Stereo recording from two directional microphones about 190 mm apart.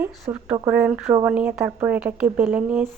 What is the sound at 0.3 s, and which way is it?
A woman's voice, 15° right (ahead or behind).